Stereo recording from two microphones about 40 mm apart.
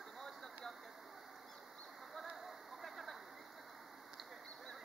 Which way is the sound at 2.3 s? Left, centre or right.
Centre.